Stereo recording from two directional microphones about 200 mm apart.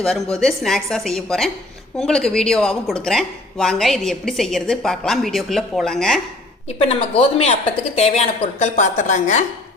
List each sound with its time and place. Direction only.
0.0 s speech: centre (ahead or behind)
6.7 s a woman's voice: 30° left (ahead or behind)